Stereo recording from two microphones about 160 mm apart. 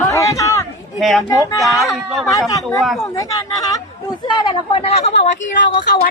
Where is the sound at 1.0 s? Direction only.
Centre (ahead or behind).